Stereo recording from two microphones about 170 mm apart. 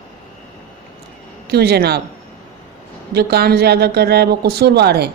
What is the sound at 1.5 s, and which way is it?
Speech, 70° right (ahead or behind).